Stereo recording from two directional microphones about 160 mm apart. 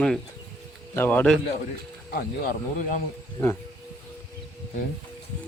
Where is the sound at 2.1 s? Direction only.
70° left (ahead or behind).